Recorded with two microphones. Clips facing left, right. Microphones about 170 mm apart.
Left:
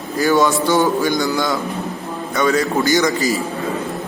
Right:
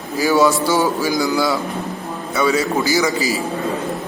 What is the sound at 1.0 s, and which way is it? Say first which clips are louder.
Speech: left 1 dB; centre (ahead or behind).